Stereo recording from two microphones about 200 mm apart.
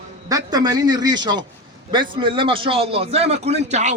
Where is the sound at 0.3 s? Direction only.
20° right (ahead or behind).